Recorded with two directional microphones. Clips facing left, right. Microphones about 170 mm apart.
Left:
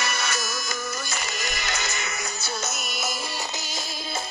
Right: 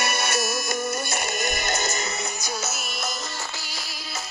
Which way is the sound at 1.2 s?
55° right (ahead or behind).